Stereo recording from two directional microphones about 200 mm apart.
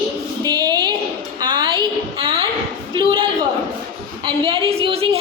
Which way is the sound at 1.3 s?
25° right (ahead or behind).